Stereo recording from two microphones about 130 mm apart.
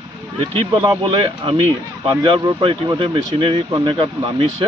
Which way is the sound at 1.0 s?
40° right (ahead or behind).